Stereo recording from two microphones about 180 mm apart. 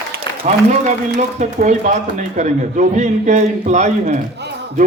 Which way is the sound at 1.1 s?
45° right (ahead or behind).